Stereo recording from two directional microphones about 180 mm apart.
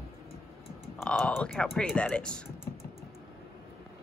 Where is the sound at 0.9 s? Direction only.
5° left (ahead or behind).